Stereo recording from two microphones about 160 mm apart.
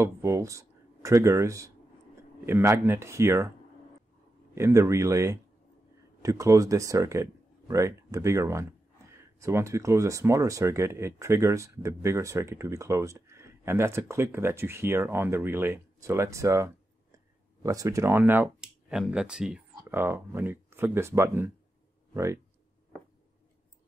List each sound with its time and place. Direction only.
0.0 s speech: 20° right (ahead or behind)
4.6 s speech: 20° right (ahead or behind)